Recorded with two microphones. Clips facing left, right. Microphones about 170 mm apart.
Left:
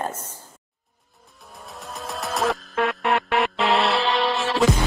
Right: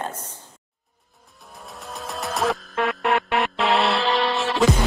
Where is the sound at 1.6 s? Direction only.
Centre (ahead or behind).